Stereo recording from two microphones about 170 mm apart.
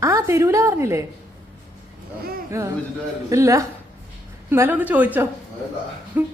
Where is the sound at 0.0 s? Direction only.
15° right (ahead or behind).